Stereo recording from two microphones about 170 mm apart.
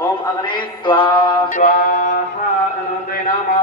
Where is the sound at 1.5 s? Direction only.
55° left (ahead or behind).